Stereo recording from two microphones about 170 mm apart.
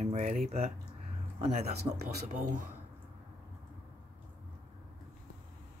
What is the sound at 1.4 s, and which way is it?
Speech, 40° right (ahead or behind).